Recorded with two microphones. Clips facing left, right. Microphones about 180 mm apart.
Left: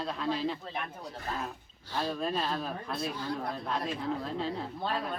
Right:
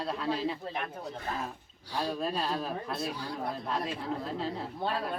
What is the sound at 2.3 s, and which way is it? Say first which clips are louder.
Speech: even; 40° right (ahead or behind).